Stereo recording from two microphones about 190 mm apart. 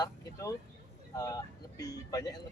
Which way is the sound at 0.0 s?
15° left (ahead or behind).